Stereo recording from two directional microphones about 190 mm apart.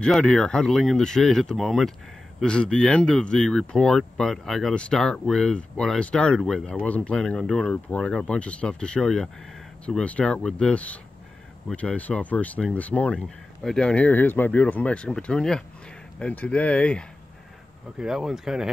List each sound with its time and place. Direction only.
0.0 s speech: 5° left (ahead or behind)